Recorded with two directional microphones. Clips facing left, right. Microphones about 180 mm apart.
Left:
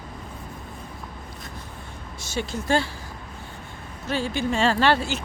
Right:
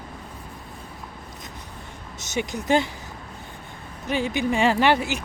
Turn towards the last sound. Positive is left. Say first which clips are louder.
# right 1 dB
turn(degrees=-15)  # may be behind; listen again after turning